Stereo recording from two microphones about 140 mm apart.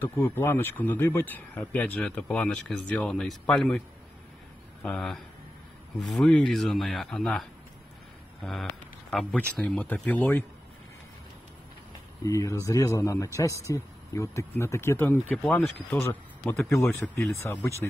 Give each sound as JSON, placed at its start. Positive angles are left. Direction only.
{"t": 0.0, "sound": "speech", "side_deg": 15}
{"t": 4.8, "sound": "speech", "side_deg": 5}
{"t": 9.1, "sound": "speech", "side_deg": 5}
{"t": 12.2, "sound": "a man's voice", "side_deg": 25}
{"t": 16.6, "sound": "a man's voice", "side_deg": 20}